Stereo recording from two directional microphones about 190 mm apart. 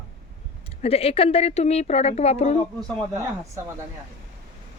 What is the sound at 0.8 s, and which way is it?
Speech, 30° left (ahead or behind).